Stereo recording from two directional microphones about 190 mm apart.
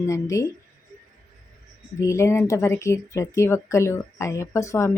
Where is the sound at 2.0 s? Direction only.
15° left (ahead or behind).